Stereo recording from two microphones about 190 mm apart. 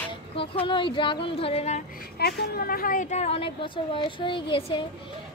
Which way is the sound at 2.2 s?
55° left (ahead or behind).